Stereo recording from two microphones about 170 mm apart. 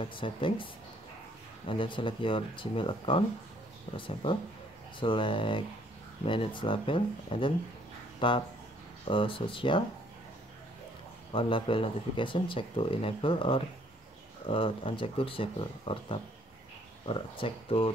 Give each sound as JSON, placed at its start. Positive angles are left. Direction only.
{"t": 0.0, "sound": "speech", "side_deg": 30}
{"t": 1.7, "sound": "speech", "side_deg": 30}
{"t": 11.3, "sound": "speech", "side_deg": 30}